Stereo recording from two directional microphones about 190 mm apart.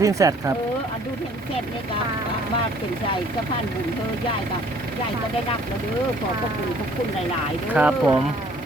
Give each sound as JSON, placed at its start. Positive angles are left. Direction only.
{"t": 0.0, "sound": "speech", "side_deg": -15}
{"t": 7.7, "sound": "speech", "side_deg": -10}